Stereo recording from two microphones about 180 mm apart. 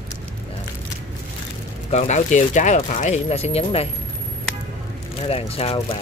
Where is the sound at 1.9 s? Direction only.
40° left (ahead or behind).